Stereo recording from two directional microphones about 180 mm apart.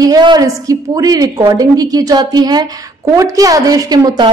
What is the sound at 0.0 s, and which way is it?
A woman's voice, 20° right (ahead or behind).